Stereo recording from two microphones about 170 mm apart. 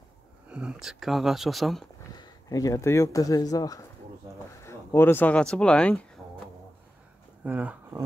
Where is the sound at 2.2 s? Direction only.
20° left (ahead or behind).